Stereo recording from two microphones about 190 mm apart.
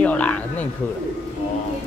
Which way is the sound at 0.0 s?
5° left (ahead or behind).